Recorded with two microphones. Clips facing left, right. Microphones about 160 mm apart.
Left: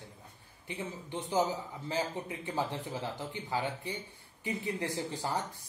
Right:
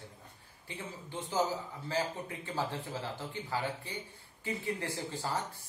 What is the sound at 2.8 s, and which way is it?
Speech, 15° left (ahead or behind).